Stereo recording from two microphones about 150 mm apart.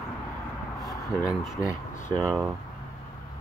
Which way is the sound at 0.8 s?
25° left (ahead or behind).